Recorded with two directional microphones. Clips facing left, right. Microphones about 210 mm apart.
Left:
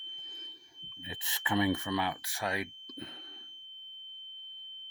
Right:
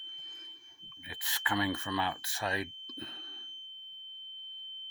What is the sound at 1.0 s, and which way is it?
Speech, 20° left (ahead or behind).